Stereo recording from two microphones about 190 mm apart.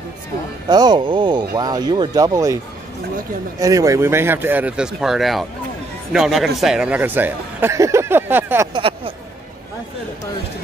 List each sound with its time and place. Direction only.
0.7 s speech: 20° right (ahead or behind)
8.7 s speech: 30° right (ahead or behind)